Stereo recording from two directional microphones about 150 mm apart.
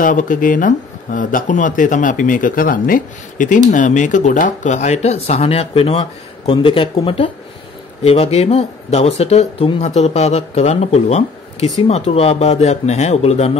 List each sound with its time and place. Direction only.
0.0 s speech: 60° left (ahead or behind)